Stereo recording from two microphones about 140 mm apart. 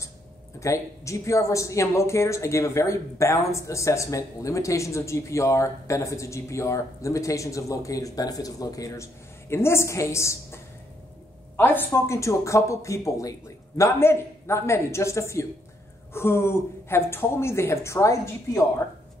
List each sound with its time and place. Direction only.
0.6 s speech: 20° left (ahead or behind)